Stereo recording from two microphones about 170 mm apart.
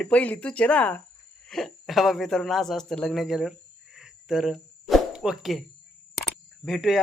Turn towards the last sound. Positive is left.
turn(degrees=0)  # may be behind; listen again after turning